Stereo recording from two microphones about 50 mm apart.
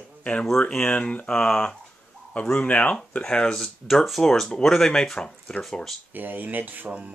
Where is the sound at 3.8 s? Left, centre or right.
Centre.